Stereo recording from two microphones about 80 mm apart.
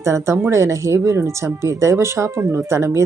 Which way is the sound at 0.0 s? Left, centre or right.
Right.